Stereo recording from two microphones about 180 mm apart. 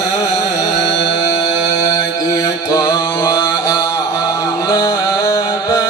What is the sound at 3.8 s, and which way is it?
Music, 15° left (ahead or behind).